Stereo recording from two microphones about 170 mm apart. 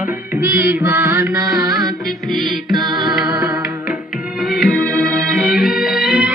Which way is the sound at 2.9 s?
Centre (ahead or behind).